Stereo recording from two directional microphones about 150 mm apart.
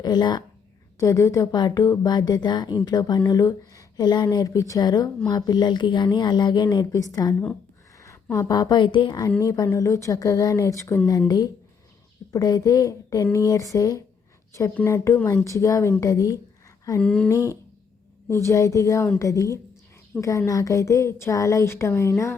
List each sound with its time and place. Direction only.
0.0 s a woman's voice: 30° left (ahead or behind)
12.3 s speech: 25° left (ahead or behind)
17.0 s a sound: 5° left (ahead or behind)
17.3 s speech: 20° left (ahead or behind)